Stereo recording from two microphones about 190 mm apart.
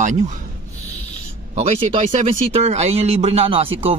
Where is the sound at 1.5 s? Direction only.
35° right (ahead or behind).